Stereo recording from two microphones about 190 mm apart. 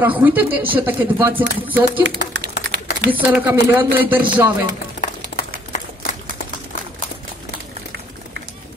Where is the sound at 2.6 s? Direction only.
60° right (ahead or behind).